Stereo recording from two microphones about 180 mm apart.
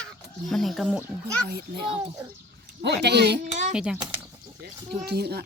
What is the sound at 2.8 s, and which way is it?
Speech, 70° right (ahead or behind).